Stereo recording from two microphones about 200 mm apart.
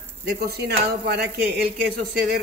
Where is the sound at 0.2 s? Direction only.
50° right (ahead or behind).